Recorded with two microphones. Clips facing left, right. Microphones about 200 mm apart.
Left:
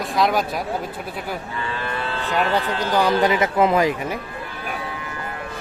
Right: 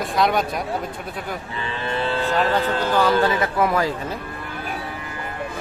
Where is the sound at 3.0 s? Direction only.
20° left (ahead or behind).